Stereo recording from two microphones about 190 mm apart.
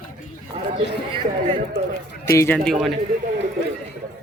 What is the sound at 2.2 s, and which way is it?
Speech, 15° left (ahead or behind).